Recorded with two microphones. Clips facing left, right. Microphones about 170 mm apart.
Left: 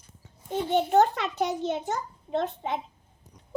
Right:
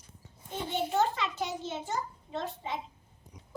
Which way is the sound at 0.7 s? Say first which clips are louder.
Left 7 dB; 60° left (ahead or behind).